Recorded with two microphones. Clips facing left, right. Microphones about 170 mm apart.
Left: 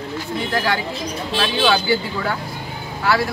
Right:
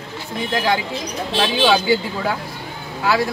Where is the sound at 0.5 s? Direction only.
15° right (ahead or behind).